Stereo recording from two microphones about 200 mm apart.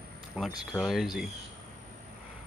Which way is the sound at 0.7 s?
Centre (ahead or behind).